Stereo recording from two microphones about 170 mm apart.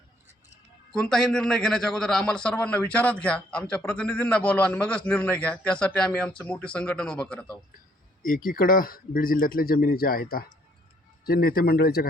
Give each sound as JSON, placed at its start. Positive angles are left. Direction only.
{"t": 0.9, "sound": "a man's voice", "side_deg": 5}
{"t": 8.2, "sound": "speech", "side_deg": 55}